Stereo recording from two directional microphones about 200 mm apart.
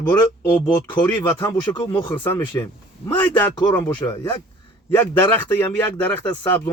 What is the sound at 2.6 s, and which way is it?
A man's voice, 10° left (ahead or behind).